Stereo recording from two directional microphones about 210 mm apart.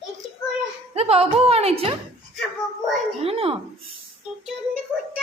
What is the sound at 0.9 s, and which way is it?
Speech, 30° right (ahead or behind).